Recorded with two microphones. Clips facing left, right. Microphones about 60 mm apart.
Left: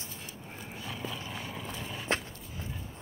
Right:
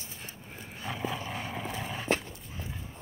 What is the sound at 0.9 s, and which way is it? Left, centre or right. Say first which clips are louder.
Vehicle: right 6 dB; right.